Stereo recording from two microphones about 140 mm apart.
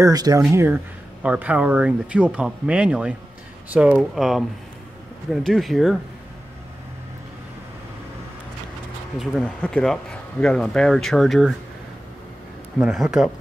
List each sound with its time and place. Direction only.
0.0 s speech: 25° right (ahead or behind); by 5.9 s centre (ahead or behind)
9.2 s speech: 5° left (ahead or behind)
12.7 s speech: centre (ahead or behind)